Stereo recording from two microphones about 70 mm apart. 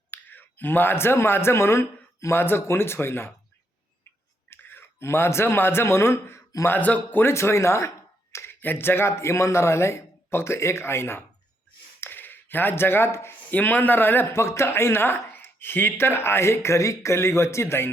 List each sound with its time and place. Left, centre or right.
0.1 s speech: left
4.4 s speech: left
6.7 s speech: left
7.3 s a sound: left
8.6 s speech: left
13.5 s speech: left